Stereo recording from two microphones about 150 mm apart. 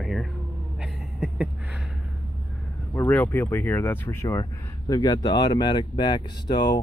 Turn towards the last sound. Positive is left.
turn(degrees=30)  # may be behind; listen again after turning